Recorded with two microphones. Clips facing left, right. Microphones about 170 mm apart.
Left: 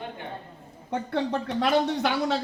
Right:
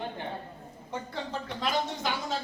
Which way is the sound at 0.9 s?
65° left (ahead or behind).